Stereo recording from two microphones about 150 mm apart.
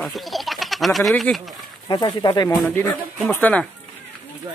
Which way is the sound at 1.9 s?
30° left (ahead or behind).